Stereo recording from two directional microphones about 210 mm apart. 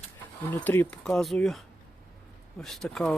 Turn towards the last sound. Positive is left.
turn(degrees=5)  # may be behind; listen again after turning